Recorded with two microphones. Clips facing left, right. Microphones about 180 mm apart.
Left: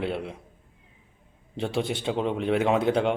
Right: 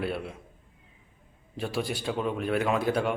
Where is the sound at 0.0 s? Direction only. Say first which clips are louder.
Left 2 dB; 20° left (ahead or behind).